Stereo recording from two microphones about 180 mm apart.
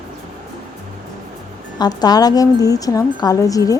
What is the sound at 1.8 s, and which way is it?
Speech, 20° left (ahead or behind).